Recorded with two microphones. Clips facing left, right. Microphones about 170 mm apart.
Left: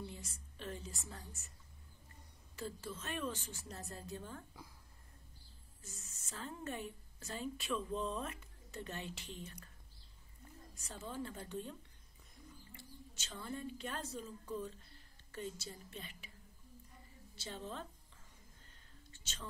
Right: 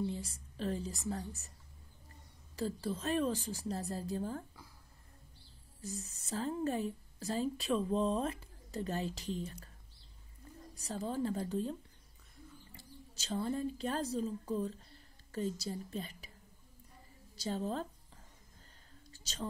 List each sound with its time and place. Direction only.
0.0 s a woman's voice: 35° right (ahead or behind)
2.5 s speech: 35° right (ahead or behind)
5.8 s speech: 35° right (ahead or behind)
10.7 s speech: 35° right (ahead or behind)
12.7 s speech: 35° right (ahead or behind)
17.4 s a sound: 40° right (ahead or behind)
19.0 s whispering: 35° right (ahead or behind)